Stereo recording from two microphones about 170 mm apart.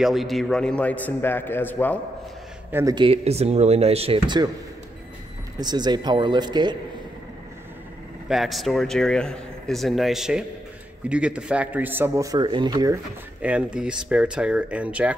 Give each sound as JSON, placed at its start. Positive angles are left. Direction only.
{"t": 0.0, "sound": "a man's voice", "side_deg": 0}
{"t": 2.7, "sound": "speech", "side_deg": -20}
{"t": 5.6, "sound": "speech", "side_deg": -25}
{"t": 8.3, "sound": "a man's voice", "side_deg": 0}
{"t": 13.4, "sound": "a man's voice", "side_deg": -5}